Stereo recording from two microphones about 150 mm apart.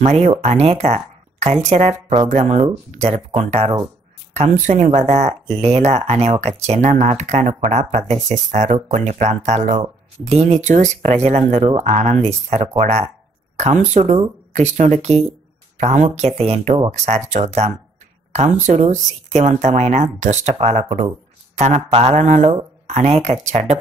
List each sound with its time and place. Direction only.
0.0 s speech: 50° right (ahead or behind)